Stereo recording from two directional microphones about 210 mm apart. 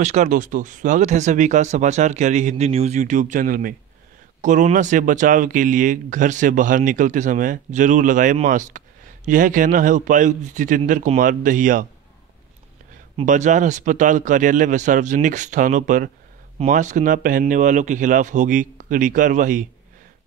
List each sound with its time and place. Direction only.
0.0 s speech: 35° right (ahead or behind)
13.1 s speech: 35° right (ahead or behind)